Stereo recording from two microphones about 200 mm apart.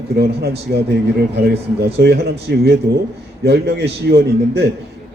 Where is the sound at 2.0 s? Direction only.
55° right (ahead or behind).